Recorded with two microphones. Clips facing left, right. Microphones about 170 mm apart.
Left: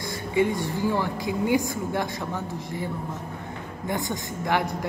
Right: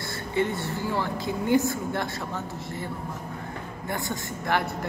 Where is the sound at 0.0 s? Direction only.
15° left (ahead or behind).